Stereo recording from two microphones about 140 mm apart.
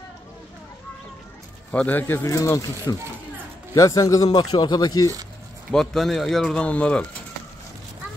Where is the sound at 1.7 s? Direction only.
10° left (ahead or behind); by 5.1 s 30° left (ahead or behind).